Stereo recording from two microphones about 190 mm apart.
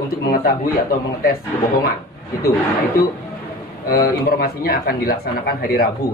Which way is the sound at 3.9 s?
55° left (ahead or behind).